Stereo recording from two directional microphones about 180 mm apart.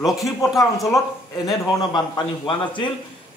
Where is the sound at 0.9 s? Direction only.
20° left (ahead or behind).